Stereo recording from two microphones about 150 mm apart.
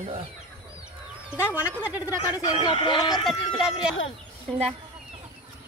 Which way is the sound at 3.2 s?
Centre (ahead or behind).